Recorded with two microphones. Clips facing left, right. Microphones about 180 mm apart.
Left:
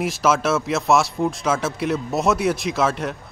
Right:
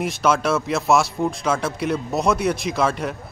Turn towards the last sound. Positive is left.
turn(degrees=0)  # may be behind; listen again after turning